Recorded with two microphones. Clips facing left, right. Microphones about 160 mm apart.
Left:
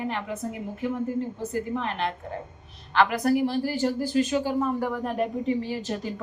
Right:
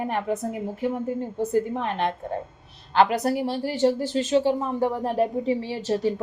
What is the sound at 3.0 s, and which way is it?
A woman's voice, 30° right (ahead or behind).